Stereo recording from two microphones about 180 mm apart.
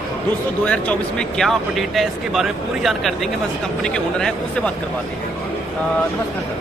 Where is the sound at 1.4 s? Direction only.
Centre (ahead or behind).